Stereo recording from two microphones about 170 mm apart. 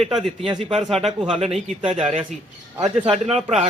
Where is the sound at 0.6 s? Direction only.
35° right (ahead or behind).